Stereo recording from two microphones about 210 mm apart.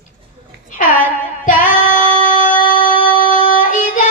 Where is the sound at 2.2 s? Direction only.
40° left (ahead or behind).